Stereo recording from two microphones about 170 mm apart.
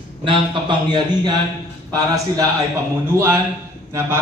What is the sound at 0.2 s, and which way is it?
A man's voice, 30° right (ahead or behind).